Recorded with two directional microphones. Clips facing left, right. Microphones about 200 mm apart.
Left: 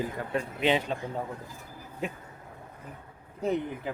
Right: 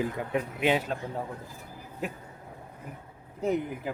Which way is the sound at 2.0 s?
Centre (ahead or behind).